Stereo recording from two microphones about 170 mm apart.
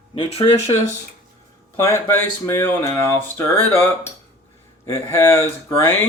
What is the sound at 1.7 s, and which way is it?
Speech, 15° left (ahead or behind).